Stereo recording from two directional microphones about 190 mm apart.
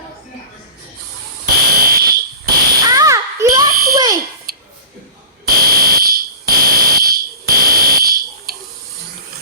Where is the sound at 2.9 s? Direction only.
20° right (ahead or behind).